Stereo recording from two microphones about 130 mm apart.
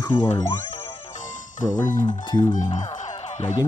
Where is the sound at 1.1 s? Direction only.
80° left.